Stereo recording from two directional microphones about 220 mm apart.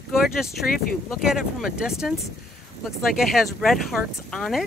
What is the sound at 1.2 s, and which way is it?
Speech, centre (ahead or behind).